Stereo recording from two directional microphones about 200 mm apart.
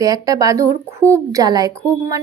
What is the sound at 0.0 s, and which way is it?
Speech, 15° right (ahead or behind).